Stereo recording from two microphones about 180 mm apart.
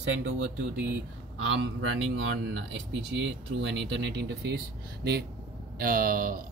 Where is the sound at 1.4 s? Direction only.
90° right; by 4.6 s 70° right (ahead or behind).